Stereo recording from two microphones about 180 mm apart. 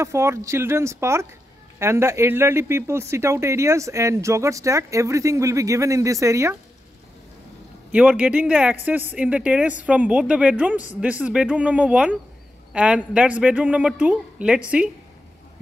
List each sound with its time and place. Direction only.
0.0 s speech: 15° right (ahead or behind)
7.9 s speech: 5° right (ahead or behind)